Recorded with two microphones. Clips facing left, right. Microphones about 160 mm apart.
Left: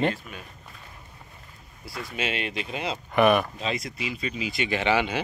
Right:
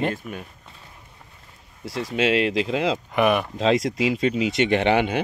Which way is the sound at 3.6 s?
90° right.